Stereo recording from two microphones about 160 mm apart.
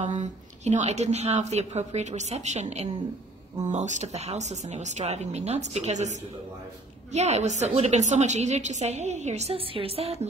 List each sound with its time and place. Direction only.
0.0 s a woman's voice: 45° right (ahead or behind)